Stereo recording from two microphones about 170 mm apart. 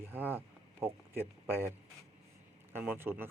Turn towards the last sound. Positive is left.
turn(degrees=-15)  # may be behind; listen again after turning